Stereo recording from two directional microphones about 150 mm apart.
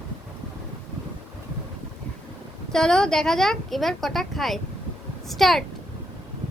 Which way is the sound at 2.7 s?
5° left (ahead or behind).